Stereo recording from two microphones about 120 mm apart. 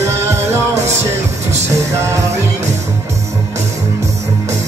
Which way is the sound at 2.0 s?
20° right (ahead or behind).